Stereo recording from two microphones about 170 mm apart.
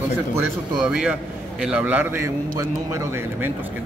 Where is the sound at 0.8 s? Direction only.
5° right (ahead or behind).